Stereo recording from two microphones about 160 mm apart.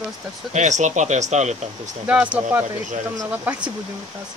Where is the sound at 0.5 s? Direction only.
50° right (ahead or behind).